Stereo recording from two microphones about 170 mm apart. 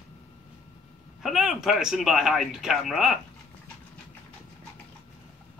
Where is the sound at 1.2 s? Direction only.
Centre (ahead or behind).